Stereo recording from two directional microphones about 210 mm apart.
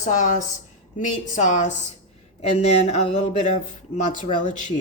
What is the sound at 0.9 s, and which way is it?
Speech, 35° left (ahead or behind).